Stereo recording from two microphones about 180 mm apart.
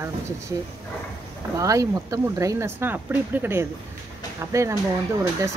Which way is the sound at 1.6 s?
20° right (ahead or behind).